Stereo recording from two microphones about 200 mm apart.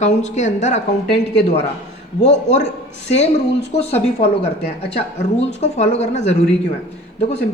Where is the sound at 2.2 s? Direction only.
35° left (ahead or behind).